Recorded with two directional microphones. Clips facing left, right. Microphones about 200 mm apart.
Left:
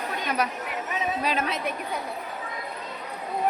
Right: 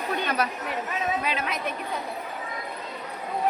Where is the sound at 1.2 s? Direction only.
45° left (ahead or behind).